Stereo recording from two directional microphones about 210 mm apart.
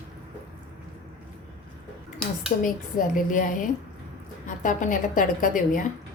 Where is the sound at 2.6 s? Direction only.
40° left (ahead or behind).